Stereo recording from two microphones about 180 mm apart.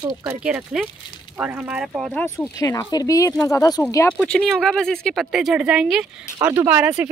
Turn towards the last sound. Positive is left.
turn(degrees=-5)  # may be behind; listen again after turning